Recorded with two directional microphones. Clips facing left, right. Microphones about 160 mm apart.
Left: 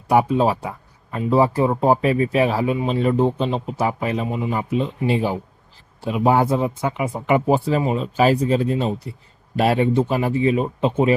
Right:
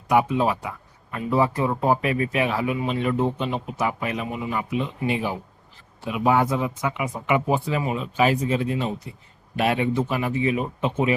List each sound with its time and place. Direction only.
0.1 s speech: 35° left (ahead or behind)